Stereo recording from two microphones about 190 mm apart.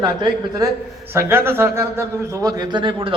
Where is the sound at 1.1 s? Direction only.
10° right (ahead or behind).